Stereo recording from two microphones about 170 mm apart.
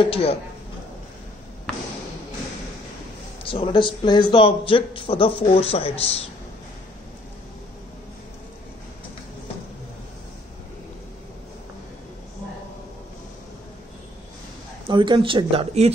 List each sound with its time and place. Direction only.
0.0 s a man's voice: 35° left (ahead or behind)
3.4 s a man's voice: 30° left (ahead or behind)
14.9 s speech: 30° right (ahead or behind)